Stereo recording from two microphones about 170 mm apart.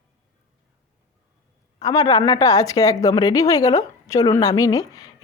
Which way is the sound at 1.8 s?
20° left (ahead or behind).